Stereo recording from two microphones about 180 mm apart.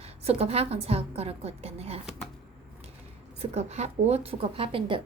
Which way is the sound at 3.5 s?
35° right (ahead or behind).